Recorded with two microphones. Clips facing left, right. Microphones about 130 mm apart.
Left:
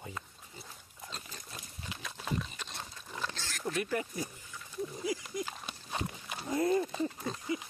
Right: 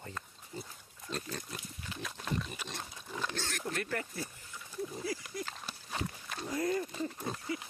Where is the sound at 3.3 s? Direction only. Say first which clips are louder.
Right 4 dB; 55° right (ahead or behind).